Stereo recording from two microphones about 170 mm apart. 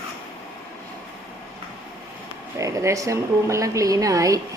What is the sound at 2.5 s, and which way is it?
A woman's voice, 20° right (ahead or behind).